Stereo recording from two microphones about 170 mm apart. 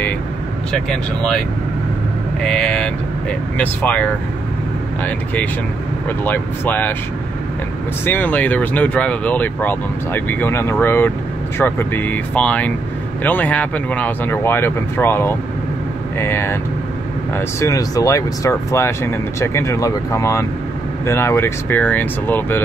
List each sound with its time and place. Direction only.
0.7 s speech: 5° left (ahead or behind)
2.4 s speech: 5° left (ahead or behind)
8.0 s speech: 10° left (ahead or behind)
17.6 s speech: 20° left (ahead or behind)